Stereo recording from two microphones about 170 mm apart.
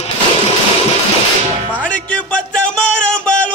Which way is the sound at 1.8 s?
10° left (ahead or behind).